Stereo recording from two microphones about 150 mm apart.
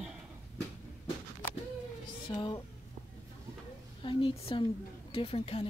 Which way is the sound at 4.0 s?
35° left (ahead or behind).